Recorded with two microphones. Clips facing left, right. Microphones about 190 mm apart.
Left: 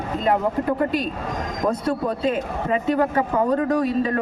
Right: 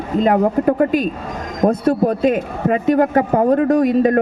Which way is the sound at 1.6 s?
40° right (ahead or behind).